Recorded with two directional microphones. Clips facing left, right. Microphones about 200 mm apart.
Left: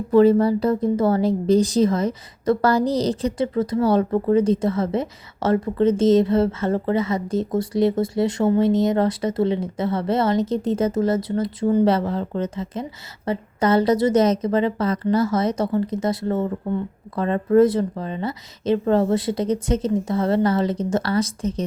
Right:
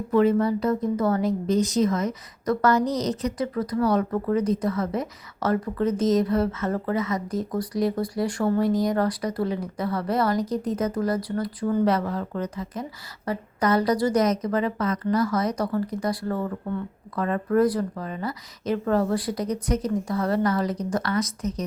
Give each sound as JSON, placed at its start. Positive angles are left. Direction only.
{"t": 0.1, "sound": "speech", "side_deg": 35}